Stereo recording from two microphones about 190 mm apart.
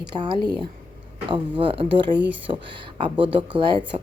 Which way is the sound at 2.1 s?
65° right (ahead or behind).